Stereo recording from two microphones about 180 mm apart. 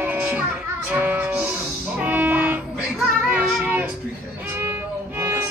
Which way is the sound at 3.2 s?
5° right (ahead or behind).